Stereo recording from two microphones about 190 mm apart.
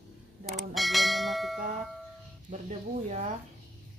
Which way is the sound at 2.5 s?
40° right (ahead or behind).